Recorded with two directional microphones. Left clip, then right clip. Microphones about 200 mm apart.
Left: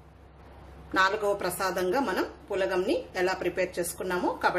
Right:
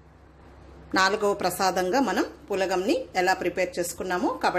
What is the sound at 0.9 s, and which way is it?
A woman's voice, 30° right (ahead or behind).